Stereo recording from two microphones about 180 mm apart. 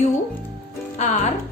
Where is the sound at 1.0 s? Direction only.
40° left (ahead or behind).